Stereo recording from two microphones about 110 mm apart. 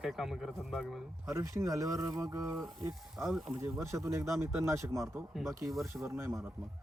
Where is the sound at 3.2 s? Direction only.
Centre (ahead or behind).